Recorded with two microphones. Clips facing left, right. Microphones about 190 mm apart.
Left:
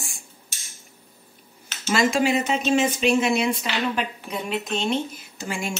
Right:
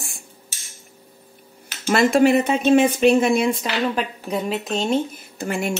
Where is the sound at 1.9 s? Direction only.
60° right (ahead or behind); by 5.0 s 40° right (ahead or behind).